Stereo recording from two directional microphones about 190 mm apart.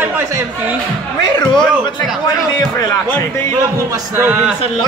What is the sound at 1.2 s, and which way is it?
Speech, 20° left (ahead or behind).